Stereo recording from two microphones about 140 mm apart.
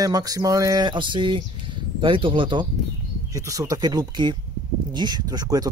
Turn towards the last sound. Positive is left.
turn(degrees=-25)  # may be behind; listen again after turning